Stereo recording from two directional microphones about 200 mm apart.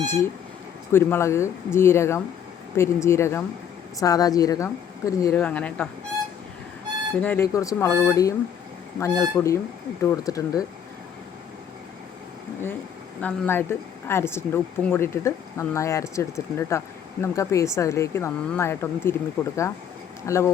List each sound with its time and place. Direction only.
0.0 s a woman's voice: 10° left (ahead or behind)
7.2 s speech: 10° left (ahead or behind)
13.2 s speech: 10° left (ahead or behind)